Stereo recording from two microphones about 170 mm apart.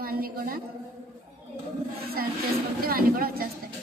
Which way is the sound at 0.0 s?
60° right (ahead or behind).